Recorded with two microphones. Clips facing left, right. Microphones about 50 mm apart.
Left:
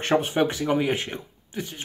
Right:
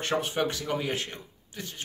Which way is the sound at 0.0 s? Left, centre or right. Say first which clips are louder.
Left 6 dB; left.